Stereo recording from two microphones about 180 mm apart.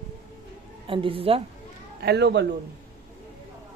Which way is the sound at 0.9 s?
30° right (ahead or behind).